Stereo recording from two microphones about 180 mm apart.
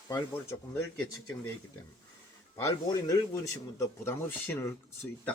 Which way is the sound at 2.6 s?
15° left (ahead or behind).